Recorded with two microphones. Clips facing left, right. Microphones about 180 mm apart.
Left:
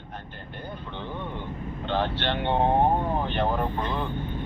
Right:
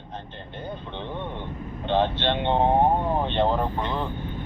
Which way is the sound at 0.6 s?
20° right (ahead or behind).